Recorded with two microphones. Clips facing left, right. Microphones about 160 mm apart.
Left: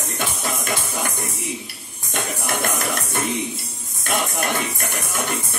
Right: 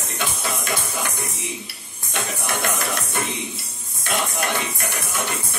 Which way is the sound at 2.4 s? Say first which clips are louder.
Left 1 dB; 50° left (ahead or behind).